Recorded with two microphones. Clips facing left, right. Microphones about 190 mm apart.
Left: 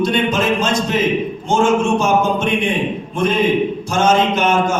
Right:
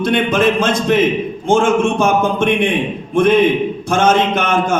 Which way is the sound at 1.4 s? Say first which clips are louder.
Right 2 dB; 55° right (ahead or behind).